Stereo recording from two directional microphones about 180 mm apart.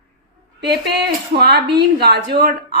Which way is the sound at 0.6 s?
65° right (ahead or behind).